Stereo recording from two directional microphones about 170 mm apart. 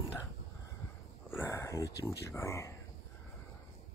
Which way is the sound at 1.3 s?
15° left (ahead or behind).